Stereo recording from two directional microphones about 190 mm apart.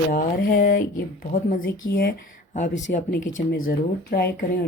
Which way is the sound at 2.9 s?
40° left (ahead or behind).